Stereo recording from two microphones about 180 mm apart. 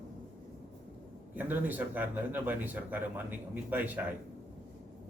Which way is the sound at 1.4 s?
10° right (ahead or behind).